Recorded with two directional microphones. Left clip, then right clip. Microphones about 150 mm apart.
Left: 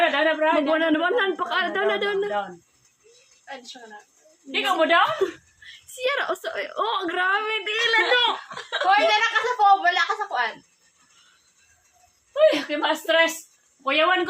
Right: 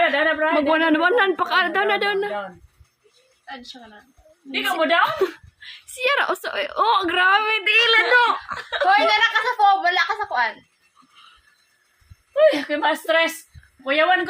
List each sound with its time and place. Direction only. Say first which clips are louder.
0.0 s a sound: right 1 dB; 15° right (ahead or behind)
0.5 s a woman's voice: right 3 dB; 35° right (ahead or behind)
4.5 s a woman's voice: even; 15° right (ahead or behind)
5.0 s a woman's voice: right 2 dB; 30° right (ahead or behind)
7.7 s speech: right 5 dB; 20° right (ahead or behind)
12.3 s a woman's voice: right 2 dB; 15° right (ahead or behind)